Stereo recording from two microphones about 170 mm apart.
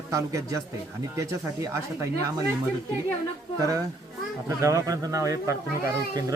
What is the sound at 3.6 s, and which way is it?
A man's voice, 20° right (ahead or behind).